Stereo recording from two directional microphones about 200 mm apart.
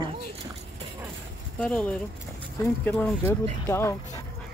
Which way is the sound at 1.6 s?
5° left (ahead or behind).